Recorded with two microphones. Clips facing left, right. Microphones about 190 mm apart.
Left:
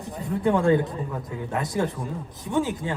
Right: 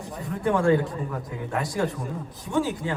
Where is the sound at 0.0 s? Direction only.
20° left (ahead or behind).